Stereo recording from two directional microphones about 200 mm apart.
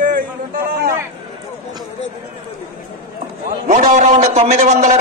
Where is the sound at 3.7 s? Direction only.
35° right (ahead or behind).